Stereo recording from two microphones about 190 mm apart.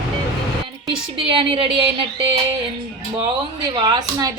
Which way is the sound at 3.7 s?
20° right (ahead or behind).